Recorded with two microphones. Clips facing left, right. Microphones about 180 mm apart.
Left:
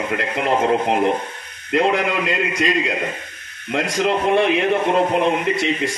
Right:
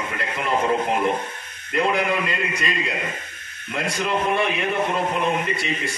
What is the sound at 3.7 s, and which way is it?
Speech, 85° left.